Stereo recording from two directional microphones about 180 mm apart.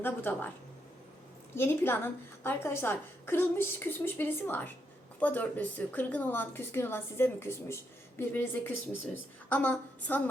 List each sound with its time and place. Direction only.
0.0 s a woman's voice: 10° left (ahead or behind)
1.5 s a woman's voice: 10° left (ahead or behind)